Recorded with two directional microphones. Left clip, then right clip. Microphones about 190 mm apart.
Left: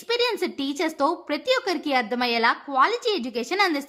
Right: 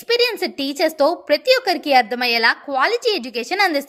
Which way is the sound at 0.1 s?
10° right (ahead or behind).